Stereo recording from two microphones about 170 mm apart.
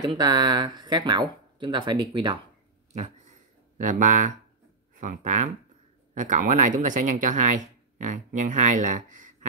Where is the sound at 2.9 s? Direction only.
45° right (ahead or behind).